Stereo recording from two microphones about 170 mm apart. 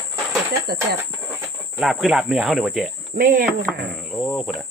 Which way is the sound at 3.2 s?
55° right (ahead or behind).